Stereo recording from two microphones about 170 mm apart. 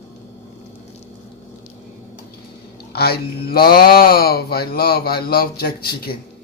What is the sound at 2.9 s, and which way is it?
Speech, 65° left (ahead or behind).